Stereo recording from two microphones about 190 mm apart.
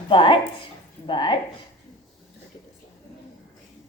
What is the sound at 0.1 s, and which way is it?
A woman's voice, 25° left (ahead or behind).